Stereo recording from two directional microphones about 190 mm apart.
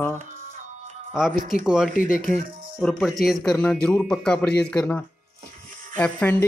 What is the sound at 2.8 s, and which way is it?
Speech, centre (ahead or behind).